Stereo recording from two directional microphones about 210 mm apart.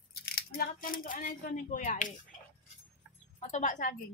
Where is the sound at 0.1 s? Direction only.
45° left (ahead or behind).